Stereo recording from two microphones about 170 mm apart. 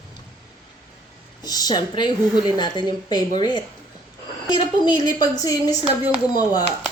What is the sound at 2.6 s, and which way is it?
Speech, 25° left (ahead or behind).